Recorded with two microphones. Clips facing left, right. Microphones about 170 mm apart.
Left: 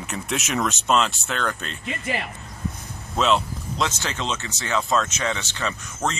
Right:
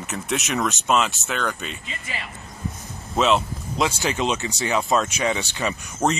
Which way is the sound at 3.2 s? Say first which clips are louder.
Right 1 dB; centre (ahead or behind).